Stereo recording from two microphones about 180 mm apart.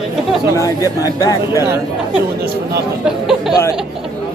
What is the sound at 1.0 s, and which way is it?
Speech, 20° left (ahead or behind).